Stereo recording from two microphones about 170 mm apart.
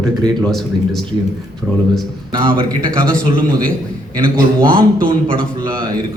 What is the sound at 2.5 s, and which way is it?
Speech, 55° right (ahead or behind).